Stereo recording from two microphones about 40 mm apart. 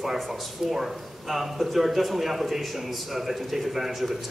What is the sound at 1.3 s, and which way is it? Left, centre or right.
A man's voice, centre.